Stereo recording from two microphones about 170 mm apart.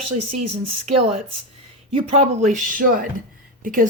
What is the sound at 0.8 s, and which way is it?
A woman's voice, 40° right (ahead or behind).